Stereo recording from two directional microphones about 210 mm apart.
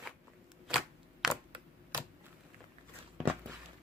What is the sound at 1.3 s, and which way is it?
Typewriter, 15° right (ahead or behind).